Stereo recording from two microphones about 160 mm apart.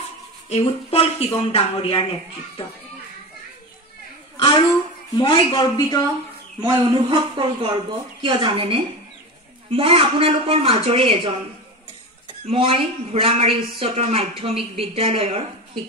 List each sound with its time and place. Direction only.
0.5 s speech: 40° left (ahead or behind)
5.1 s speech: 30° left (ahead or behind)
6.6 s a woman's voice: 25° right (ahead or behind)
12.4 s a woman's voice: 35° right (ahead or behind)